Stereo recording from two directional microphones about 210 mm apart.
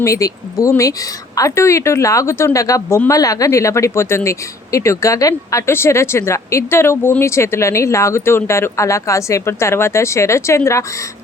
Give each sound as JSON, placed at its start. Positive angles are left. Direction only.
{"t": 0.0, "sound": "speech", "side_deg": 15}